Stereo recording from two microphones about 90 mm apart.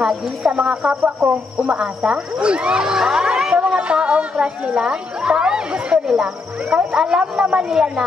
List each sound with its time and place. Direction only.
0.0 s speech: 5° right (ahead or behind)